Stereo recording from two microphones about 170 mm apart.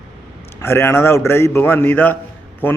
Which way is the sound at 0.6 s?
15° left (ahead or behind).